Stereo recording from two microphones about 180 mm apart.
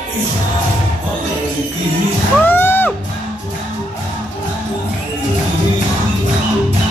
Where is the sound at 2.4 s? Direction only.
10° left (ahead or behind).